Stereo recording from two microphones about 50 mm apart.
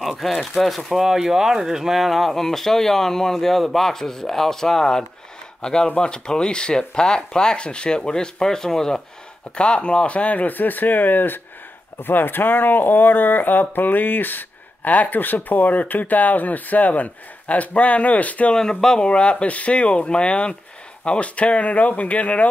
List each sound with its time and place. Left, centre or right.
0.4 s speech: centre; by 18.5 s left
18.5 s speech: centre; by 22.5 s left